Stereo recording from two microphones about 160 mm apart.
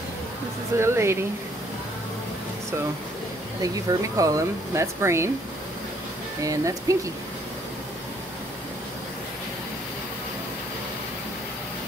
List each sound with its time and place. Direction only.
0.7 s speech: 15° right (ahead or behind)
3.6 s speech: 20° right (ahead or behind)
6.4 s speech: 20° right (ahead or behind)